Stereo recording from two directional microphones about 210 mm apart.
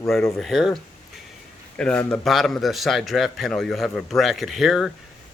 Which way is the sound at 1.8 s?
5° left (ahead or behind).